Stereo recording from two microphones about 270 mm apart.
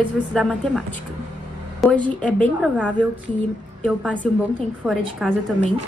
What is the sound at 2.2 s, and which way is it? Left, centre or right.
A woman's voice, centre.